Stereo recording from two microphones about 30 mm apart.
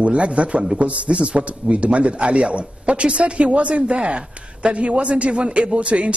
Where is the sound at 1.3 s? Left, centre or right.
Right.